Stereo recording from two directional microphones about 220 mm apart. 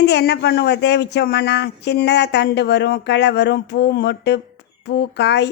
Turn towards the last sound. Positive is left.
turn(degrees=50)  # may be behind; listen again after turning